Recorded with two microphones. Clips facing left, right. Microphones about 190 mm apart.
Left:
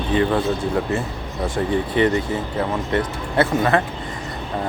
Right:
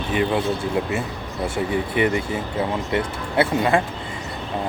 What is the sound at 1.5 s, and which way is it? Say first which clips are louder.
Speech: left 3 dB; 15° right (ahead or behind).